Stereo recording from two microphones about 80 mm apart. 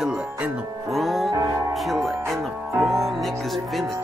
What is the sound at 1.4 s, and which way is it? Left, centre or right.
Music, right.